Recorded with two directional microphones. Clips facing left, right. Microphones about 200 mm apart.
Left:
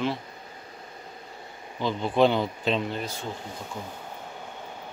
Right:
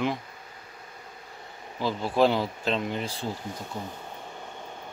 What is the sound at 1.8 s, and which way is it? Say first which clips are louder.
Speech: left 1 dB; 5° right (ahead or behind).